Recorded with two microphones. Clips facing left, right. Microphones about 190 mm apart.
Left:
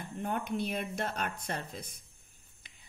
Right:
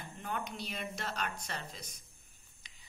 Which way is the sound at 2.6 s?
55° left (ahead or behind).